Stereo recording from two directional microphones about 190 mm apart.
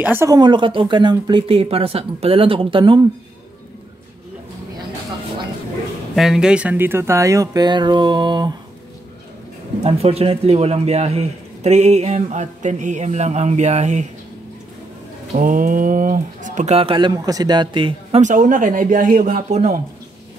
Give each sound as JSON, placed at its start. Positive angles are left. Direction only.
{"t": 0.0, "sound": "speech", "side_deg": -10}
{"t": 6.1, "sound": "speech", "side_deg": 0}
{"t": 9.8, "sound": "speech", "side_deg": -30}
{"t": 15.3, "sound": "speech", "side_deg": -45}
{"t": 18.2, "sound": "speech", "side_deg": -40}